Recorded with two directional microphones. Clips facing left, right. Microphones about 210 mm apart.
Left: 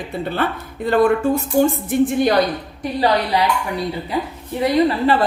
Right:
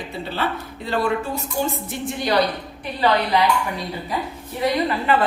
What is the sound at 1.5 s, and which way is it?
Speech, 50° left (ahead or behind).